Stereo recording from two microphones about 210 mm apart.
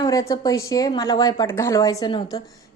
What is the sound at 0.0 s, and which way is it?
A woman's voice, 15° left (ahead or behind).